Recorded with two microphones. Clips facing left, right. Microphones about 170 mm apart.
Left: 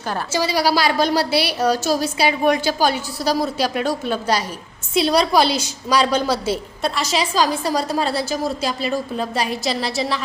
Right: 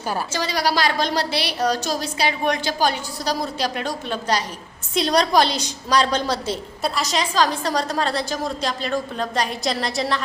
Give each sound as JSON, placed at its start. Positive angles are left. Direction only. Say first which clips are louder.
{"t": 0.3, "sound": "a woman's voice", "louder": "left 5 dB", "side_deg": 10}